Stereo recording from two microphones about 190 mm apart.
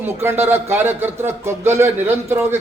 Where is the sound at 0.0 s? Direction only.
10° right (ahead or behind).